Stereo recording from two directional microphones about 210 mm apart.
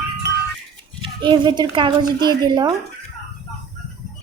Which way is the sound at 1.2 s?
20° right (ahead or behind).